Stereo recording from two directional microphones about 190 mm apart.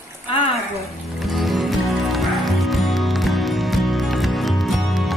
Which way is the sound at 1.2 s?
Centre (ahead or behind).